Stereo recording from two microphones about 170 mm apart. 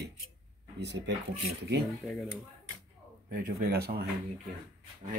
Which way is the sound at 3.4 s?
60° right (ahead or behind).